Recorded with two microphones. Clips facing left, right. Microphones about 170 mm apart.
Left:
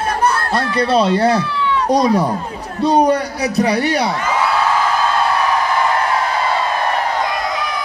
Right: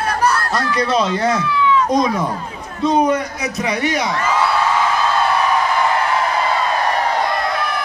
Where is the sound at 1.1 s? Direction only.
35° left (ahead or behind).